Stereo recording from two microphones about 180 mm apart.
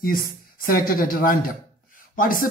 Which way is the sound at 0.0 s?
55° left (ahead or behind).